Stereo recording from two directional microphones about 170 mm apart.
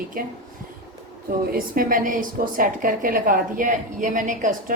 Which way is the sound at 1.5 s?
55° right (ahead or behind).